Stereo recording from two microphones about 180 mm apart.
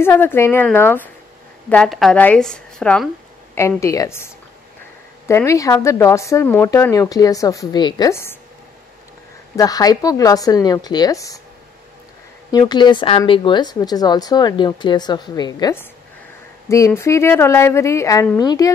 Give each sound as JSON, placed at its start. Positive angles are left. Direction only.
{"t": 0.0, "sound": "a woman's voice", "side_deg": 10}
{"t": 3.5, "sound": "speech", "side_deg": 15}
{"t": 5.3, "sound": "speech", "side_deg": 15}
{"t": 9.6, "sound": "speech", "side_deg": 20}
{"t": 12.4, "sound": "speech", "side_deg": 25}